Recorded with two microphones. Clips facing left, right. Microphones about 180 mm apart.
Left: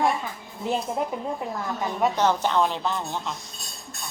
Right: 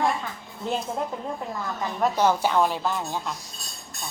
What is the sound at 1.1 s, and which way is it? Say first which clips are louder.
Speech: left 2 dB; 15° left (ahead or behind).